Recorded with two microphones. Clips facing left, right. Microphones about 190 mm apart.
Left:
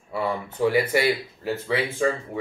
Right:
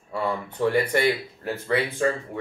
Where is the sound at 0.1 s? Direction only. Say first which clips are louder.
Left 1 dB; 10° left (ahead or behind).